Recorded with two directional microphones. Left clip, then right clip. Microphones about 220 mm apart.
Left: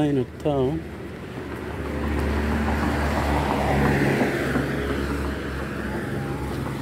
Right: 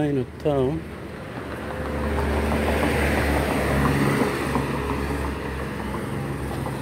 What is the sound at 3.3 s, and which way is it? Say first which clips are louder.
Vehicle: even; 45° right (ahead or behind).